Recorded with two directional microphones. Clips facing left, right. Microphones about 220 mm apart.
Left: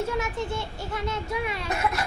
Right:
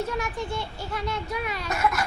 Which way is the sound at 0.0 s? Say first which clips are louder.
Left 1 dB; 25° left (ahead or behind).